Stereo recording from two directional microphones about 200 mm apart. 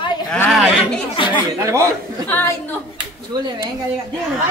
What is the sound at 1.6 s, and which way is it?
Speech, 15° right (ahead or behind).